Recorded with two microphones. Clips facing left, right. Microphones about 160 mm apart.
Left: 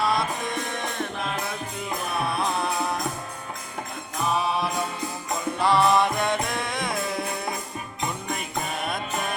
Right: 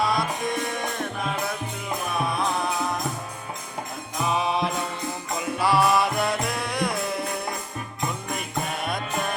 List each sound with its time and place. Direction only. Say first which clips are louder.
0.0 s music: even; centre (ahead or behind)
4.4 s music: right 2 dB; 20° right (ahead or behind); by 6.9 s centre (ahead or behind)